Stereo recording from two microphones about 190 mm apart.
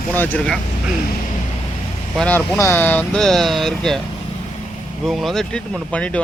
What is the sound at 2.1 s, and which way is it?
Speech, 10° left (ahead or behind).